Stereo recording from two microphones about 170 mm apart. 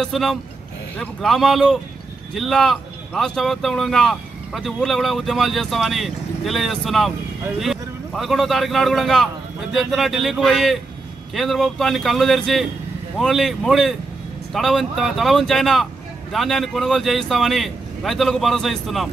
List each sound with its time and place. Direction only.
0.0 s speech: centre (ahead or behind)